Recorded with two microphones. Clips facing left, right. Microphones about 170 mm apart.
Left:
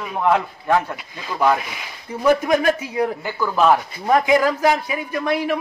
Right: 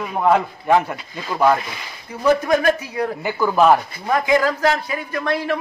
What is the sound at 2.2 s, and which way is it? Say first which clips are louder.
Speech: even; 15° left (ahead or behind).